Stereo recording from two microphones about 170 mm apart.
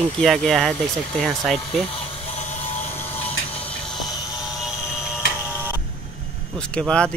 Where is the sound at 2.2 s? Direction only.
40° left (ahead or behind).